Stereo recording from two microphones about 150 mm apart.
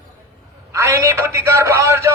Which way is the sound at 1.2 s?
20° right (ahead or behind).